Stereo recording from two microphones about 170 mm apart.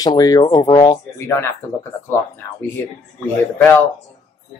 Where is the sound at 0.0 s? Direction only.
20° left (ahead or behind).